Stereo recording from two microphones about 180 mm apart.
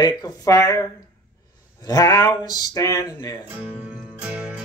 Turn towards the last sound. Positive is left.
turn(degrees=-5)  # may be behind; listen again after turning